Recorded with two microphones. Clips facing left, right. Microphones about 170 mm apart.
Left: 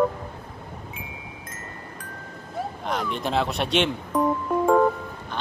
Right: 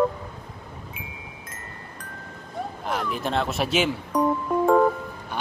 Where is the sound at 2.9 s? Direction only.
Centre (ahead or behind).